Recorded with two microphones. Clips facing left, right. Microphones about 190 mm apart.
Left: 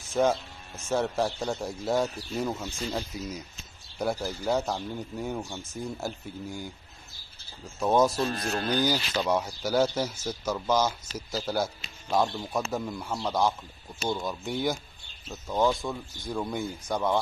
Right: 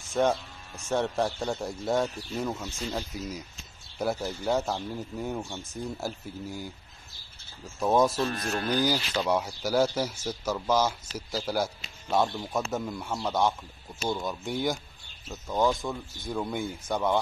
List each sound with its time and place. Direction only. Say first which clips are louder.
0.1 s speech: left 1 dB; centre (ahead or behind)
8.3 s speech: left 1 dB; 30° left (ahead or behind)
8.8 s speech: even; centre (ahead or behind)